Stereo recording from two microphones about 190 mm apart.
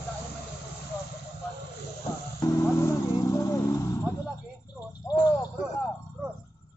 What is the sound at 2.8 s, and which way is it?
Vehicle, 15° left (ahead or behind).